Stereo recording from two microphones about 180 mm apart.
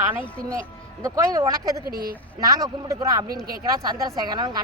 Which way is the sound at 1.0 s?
20° right (ahead or behind).